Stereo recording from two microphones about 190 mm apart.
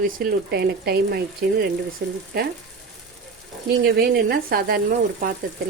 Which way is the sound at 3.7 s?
55° right (ahead or behind).